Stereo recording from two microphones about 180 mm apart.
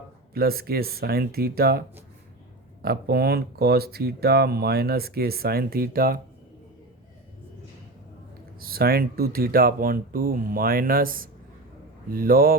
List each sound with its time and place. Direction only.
0.3 s speech: 55° right (ahead or behind)
2.8 s speech: 60° right (ahead or behind)
8.5 s speech: 55° right (ahead or behind)